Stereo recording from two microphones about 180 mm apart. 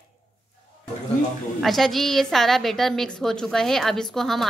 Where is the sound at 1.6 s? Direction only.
Centre (ahead or behind).